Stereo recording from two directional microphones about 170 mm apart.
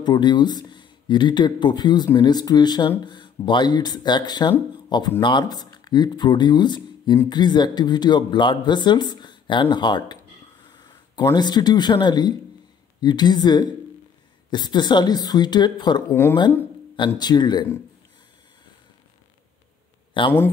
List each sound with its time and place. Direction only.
0.0 s speech: 25° left (ahead or behind)
16.1 s speech: 15° left (ahead or behind)
17.2 s speech: 25° left (ahead or behind)
20.2 s speech: 30° left (ahead or behind)